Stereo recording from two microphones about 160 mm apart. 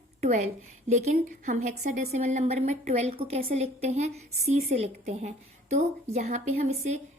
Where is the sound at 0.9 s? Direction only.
45° right (ahead or behind).